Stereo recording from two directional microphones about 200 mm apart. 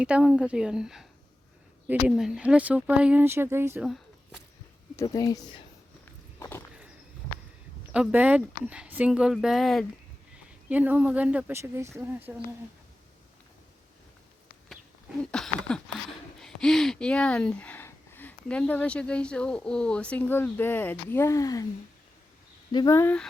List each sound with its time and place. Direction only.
0.0 s speech: 5° right (ahead or behind)
4.9 s speech: 15° left (ahead or behind)
6.4 s a sound: 10° left (ahead or behind)
7.9 s speech: 5° right (ahead or behind)
15.2 s speech: 5° left (ahead or behind)
22.7 s speech: 20° left (ahead or behind)